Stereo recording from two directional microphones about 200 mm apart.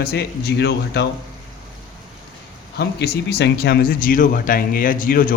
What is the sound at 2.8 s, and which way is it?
Speech, 55° left (ahead or behind).